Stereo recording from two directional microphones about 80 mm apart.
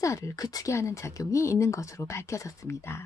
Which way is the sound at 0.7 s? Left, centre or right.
Left.